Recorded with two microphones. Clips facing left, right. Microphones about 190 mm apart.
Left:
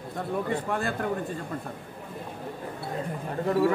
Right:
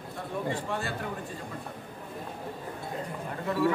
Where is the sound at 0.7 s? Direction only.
55° left (ahead or behind).